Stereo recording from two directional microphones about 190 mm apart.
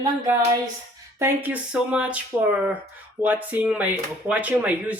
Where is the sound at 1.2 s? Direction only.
10° right (ahead or behind).